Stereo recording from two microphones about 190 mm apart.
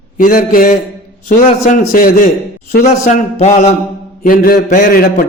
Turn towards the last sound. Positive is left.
turn(degrees=45)  # may be behind; listen again after turning